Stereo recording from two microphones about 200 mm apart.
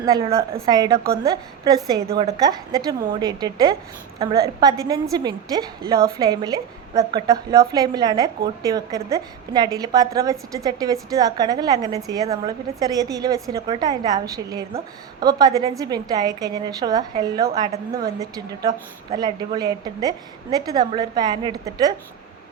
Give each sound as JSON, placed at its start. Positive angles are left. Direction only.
{"t": 0.0, "sound": "a woman's voice", "side_deg": -20}
{"t": 0.5, "sound": "a woman's voice", "side_deg": -30}
{"t": 1.2, "sound": "a woman's voice", "side_deg": -20}